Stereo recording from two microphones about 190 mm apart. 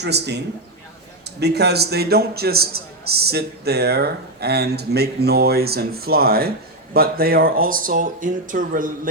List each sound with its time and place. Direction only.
0.0 s a man's voice: 60° right (ahead or behind)
1.4 s a man's voice: 60° right (ahead or behind)